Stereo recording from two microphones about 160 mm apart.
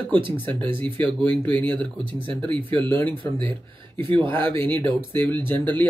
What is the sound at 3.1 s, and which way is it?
Speech, 30° right (ahead or behind).